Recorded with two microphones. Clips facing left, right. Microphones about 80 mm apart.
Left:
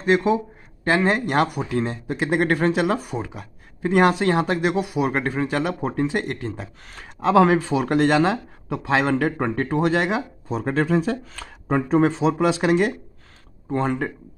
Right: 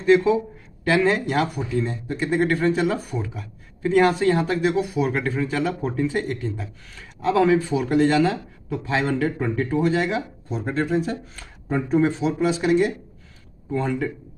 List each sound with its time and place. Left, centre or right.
0.0 s a man's voice: left
4.0 s a man's voice: left
5.2 s a man's voice: left
7.7 s speech: left
9.2 s speech: left
13.7 s speech: left